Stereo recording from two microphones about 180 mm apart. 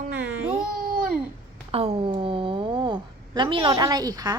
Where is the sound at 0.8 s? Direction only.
55° right (ahead or behind).